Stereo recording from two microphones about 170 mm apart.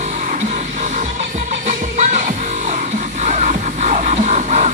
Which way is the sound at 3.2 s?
45° right (ahead or behind).